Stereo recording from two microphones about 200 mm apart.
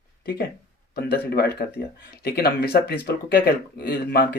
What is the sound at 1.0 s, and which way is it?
Speech, 50° left (ahead or behind).